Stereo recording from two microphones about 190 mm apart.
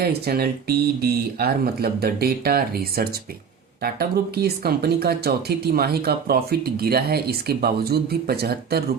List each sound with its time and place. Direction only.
0.0 s speech: 55° right (ahead or behind)